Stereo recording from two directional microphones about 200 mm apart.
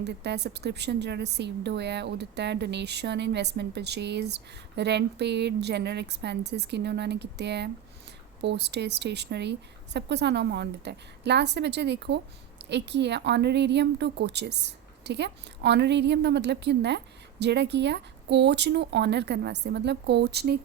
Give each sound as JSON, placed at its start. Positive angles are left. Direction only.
{"t": 0.0, "sound": "speech", "side_deg": -60}